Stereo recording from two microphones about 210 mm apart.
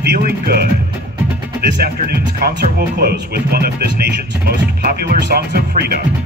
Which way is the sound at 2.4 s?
45° right (ahead or behind).